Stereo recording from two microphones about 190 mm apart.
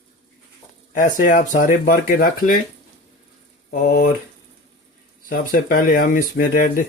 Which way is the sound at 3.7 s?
50° left (ahead or behind).